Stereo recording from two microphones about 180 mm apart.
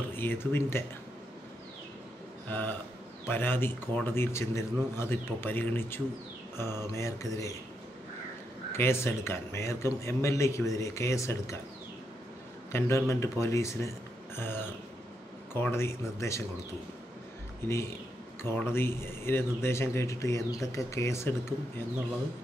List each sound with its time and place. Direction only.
0.1 s speech: 10° left (ahead or behind)
2.5 s a man's voice: 10° left (ahead or behind)
6.5 s mantra: 15° left (ahead or behind)
6.9 s a man's voice: 15° left (ahead or behind)
8.7 s a man's voice: 15° left (ahead or behind)
12.7 s a man's voice: 15° left (ahead or behind)
17.6 s a man's voice: 15° left (ahead or behind)